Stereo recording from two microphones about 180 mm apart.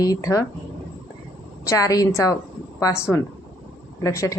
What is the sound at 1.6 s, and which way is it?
A woman's voice, 20° left (ahead or behind).